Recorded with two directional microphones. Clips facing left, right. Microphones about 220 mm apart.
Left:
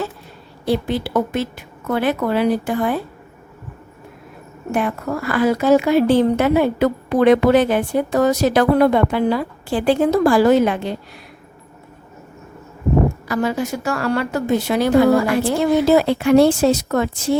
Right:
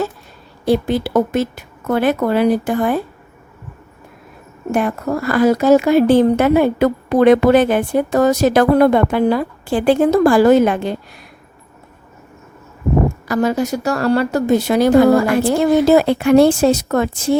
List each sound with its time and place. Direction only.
0.6 s speech: 45° right (ahead or behind)
4.7 s speech: 45° right (ahead or behind)
13.2 s speech: 45° right (ahead or behind)